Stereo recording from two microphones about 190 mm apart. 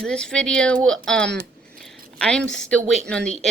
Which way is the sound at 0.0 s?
5° left (ahead or behind).